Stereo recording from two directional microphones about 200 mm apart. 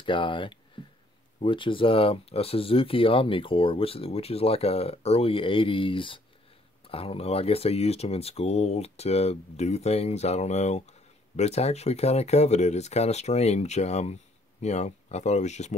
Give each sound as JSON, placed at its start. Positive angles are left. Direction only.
{"t": 0.0, "sound": "speech", "side_deg": 25}
{"t": 0.8, "sound": "a sound", "side_deg": 25}
{"t": 1.4, "sound": "speech", "side_deg": 25}